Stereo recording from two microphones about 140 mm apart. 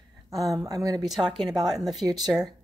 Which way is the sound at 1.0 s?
Centre (ahead or behind).